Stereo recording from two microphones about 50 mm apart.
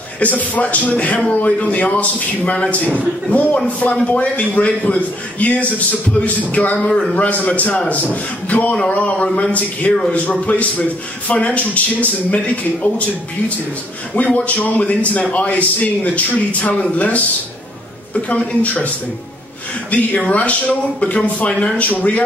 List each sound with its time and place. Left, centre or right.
0.2 s a man's voice: left
6.8 s a man's voice: left
14.1 s a man's voice: left
18.1 s a man's voice: left
19.9 s a man's voice: left
21.5 s speech: centre
21.7 s a man's voice: left